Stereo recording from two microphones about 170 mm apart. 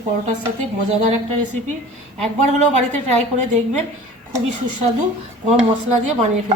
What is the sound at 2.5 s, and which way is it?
Speech, 45° right (ahead or behind).